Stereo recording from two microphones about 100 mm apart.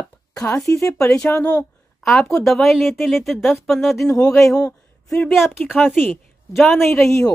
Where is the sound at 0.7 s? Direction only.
30° left (ahead or behind).